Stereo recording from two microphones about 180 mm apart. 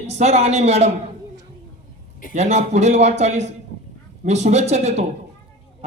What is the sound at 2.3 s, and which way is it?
A man's voice, 40° right (ahead or behind).